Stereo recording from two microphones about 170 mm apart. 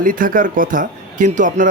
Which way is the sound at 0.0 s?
55° right (ahead or behind).